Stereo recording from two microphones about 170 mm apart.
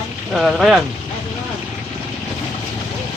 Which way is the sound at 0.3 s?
Centre (ahead or behind).